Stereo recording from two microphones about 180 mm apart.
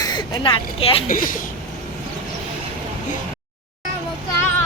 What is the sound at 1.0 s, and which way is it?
Speech, 50° left (ahead or behind).